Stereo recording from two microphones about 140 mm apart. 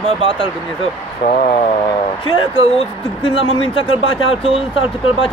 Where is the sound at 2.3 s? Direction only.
40° left (ahead or behind).